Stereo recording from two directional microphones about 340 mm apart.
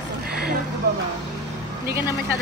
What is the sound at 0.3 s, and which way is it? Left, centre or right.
Vehicle, right.